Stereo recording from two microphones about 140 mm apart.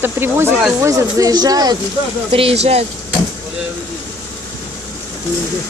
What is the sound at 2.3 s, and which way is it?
Speech, 40° right (ahead or behind).